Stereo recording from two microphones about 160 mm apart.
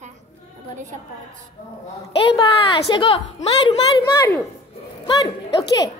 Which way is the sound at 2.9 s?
35° left (ahead or behind).